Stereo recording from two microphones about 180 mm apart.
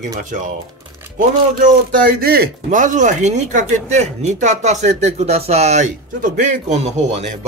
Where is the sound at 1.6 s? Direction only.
45° right (ahead or behind).